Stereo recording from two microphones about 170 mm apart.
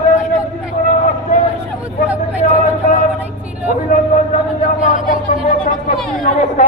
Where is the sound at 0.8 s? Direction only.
50° left (ahead or behind).